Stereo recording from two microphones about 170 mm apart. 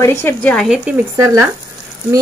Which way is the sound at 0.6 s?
5° right (ahead or behind).